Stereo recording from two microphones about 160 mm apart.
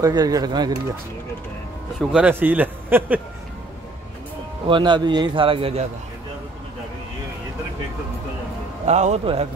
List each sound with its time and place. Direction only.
0.0 s speech: 25° right (ahead or behind)
2.0 s a man's voice: 5° right (ahead or behind)
4.6 s a man's voice: 30° right (ahead or behind)
8.8 s a man's voice: 45° right (ahead or behind)